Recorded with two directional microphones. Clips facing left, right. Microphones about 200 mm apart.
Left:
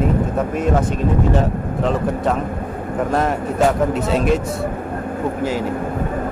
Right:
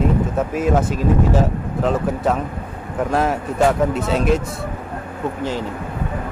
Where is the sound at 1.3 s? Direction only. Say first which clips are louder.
Even; centre (ahead or behind).